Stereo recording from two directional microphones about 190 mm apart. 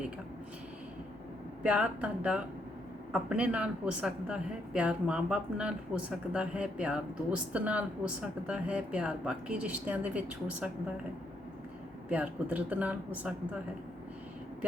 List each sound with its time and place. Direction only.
1.6 s a woman's voice: 5° right (ahead or behind)
12.0 s speech: 5° right (ahead or behind)